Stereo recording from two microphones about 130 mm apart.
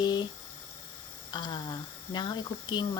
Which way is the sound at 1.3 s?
35° left (ahead or behind).